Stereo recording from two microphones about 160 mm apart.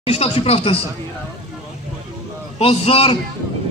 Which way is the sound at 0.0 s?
40° left (ahead or behind).